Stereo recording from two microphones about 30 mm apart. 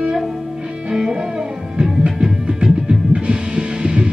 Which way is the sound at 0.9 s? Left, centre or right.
Centre.